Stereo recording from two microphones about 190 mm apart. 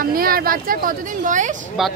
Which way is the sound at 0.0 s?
50° right (ahead or behind).